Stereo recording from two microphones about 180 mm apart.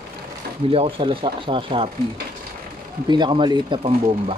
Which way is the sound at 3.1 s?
25° right (ahead or behind).